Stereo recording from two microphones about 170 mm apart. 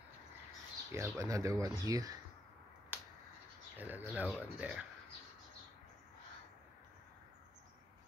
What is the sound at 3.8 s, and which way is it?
Speech, 10° right (ahead or behind).